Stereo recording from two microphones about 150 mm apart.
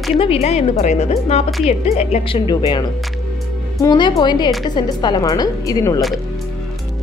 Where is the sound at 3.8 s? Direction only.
25° left (ahead or behind).